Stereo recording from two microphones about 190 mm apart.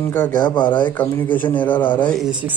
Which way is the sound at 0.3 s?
20° left (ahead or behind).